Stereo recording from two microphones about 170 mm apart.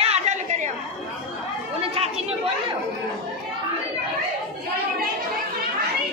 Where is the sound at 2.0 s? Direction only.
35° right (ahead or behind).